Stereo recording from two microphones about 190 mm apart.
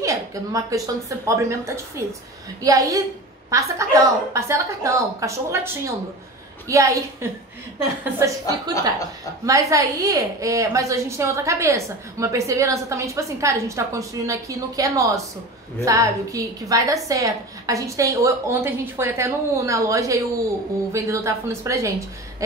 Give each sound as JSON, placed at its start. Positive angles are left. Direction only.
{"t": 0.0, "sound": "a woman's voice", "side_deg": -15}